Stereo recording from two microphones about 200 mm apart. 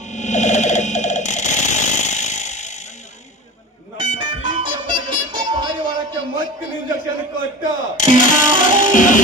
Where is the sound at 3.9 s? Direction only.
35° left (ahead or behind).